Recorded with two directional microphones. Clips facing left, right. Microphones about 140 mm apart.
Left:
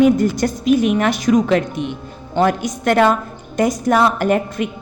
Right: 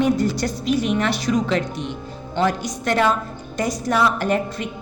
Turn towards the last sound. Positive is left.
turn(degrees=50)  # may be behind; listen again after turning